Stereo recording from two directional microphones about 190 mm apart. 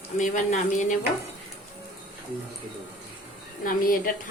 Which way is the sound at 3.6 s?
45° left (ahead or behind).